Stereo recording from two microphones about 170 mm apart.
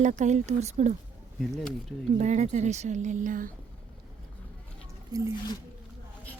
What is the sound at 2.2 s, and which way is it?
Speech, 45° right (ahead or behind).